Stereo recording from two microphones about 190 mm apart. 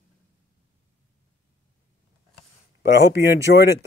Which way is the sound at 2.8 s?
65° left (ahead or behind).